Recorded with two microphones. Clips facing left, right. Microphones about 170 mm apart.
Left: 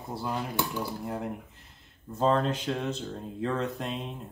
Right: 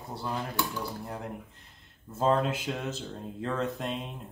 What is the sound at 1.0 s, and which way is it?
Speech, 5° left (ahead or behind).